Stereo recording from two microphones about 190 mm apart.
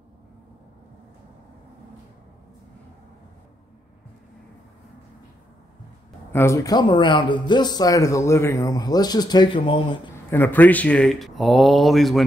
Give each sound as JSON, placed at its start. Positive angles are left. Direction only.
{"t": 6.3, "sound": "speech", "side_deg": 15}
{"t": 10.3, "sound": "speech", "side_deg": 10}